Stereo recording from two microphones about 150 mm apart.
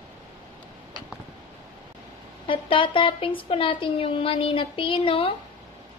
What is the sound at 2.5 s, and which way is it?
A woman's voice, 35° left (ahead or behind).